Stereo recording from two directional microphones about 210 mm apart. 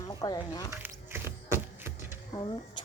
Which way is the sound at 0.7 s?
10° right (ahead or behind).